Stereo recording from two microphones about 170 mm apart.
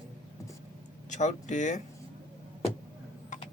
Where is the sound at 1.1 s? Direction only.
45° left (ahead or behind).